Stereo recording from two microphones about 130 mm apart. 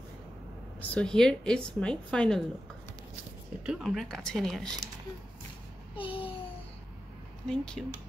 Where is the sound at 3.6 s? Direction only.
5° right (ahead or behind).